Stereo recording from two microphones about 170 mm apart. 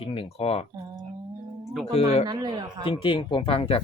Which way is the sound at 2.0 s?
35° left (ahead or behind).